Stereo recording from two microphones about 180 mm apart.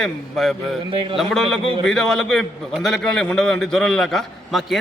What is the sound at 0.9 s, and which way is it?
Speech, 30° right (ahead or behind).